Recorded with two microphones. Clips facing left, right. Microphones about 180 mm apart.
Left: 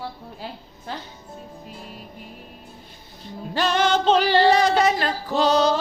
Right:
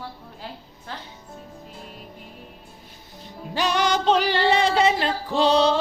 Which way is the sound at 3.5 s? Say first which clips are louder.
Left 2 dB; 15° right (ahead or behind).